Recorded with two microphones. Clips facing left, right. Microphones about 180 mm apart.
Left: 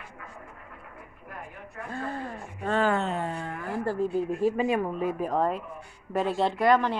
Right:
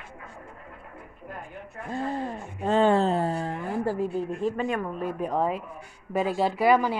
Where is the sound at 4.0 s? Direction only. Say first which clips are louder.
Left 2 dB; centre (ahead or behind).